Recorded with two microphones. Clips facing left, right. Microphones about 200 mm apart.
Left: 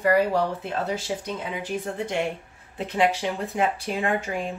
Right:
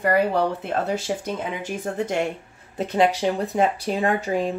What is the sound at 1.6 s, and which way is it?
Speech, 45° right (ahead or behind).